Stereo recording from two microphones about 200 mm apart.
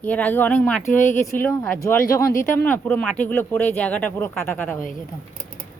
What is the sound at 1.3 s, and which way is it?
Speech, 10° left (ahead or behind).